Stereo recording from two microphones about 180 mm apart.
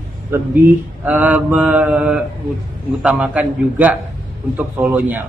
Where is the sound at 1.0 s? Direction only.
10° right (ahead or behind).